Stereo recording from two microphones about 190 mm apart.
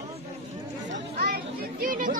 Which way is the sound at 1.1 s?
55° right (ahead or behind).